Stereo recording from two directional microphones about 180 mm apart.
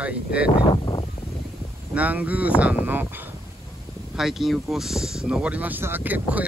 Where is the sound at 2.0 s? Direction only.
10° right (ahead or behind).